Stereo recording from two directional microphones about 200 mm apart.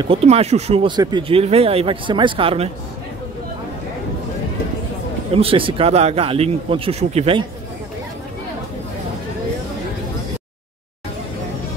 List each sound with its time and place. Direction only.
0.0 s speech: 30° right (ahead or behind)
5.3 s speech: 30° right (ahead or behind)